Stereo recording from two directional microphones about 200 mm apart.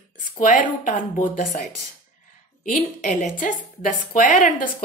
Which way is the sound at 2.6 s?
40° left (ahead or behind).